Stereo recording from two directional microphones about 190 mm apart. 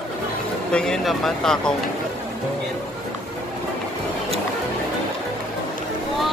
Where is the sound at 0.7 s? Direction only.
5° left (ahead or behind).